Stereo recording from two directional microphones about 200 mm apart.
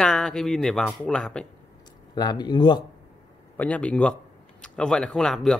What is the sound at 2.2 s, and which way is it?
Speech, 20° left (ahead or behind).